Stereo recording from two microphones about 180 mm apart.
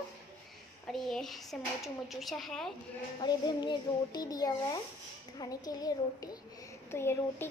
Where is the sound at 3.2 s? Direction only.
25° left (ahead or behind).